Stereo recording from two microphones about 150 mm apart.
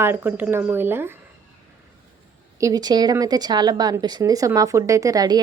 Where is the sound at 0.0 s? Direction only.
15° right (ahead or behind).